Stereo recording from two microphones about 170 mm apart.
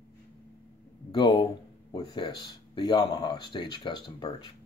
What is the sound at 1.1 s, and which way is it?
Speech, 30° left (ahead or behind).